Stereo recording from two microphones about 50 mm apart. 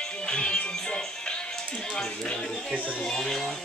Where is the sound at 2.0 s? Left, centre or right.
Centre.